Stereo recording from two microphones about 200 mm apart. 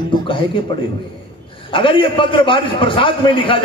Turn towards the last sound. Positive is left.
turn(degrees=25)  # may be behind; listen again after turning